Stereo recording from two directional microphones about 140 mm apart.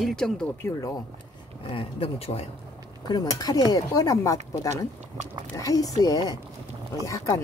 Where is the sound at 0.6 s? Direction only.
20° left (ahead or behind).